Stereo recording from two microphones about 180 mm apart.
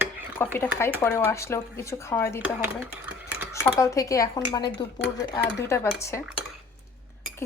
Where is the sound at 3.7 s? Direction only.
15° left (ahead or behind).